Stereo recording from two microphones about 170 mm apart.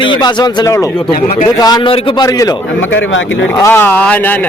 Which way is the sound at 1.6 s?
25° left (ahead or behind).